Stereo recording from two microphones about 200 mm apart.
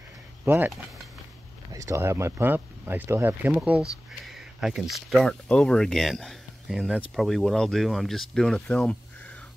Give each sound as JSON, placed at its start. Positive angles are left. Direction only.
{"t": 0.5, "sound": "speech", "side_deg": -10}